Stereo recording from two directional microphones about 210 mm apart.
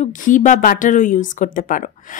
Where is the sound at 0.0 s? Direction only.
35° left (ahead or behind).